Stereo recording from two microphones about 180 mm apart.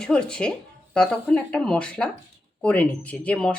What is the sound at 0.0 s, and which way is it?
Speech, 5° left (ahead or behind).